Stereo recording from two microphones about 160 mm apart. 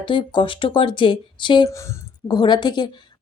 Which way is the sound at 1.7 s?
20° left (ahead or behind).